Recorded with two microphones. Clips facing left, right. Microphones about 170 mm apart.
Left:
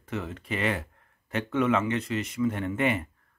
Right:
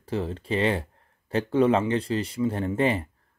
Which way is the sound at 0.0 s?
30° right (ahead or behind).